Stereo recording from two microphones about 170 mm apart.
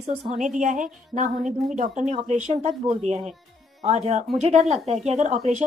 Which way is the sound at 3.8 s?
45° right (ahead or behind).